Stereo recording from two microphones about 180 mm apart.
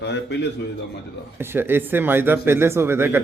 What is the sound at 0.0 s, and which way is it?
Speech, 70° left (ahead or behind).